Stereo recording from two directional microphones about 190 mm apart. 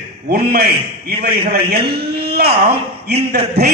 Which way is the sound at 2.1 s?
55° right (ahead or behind).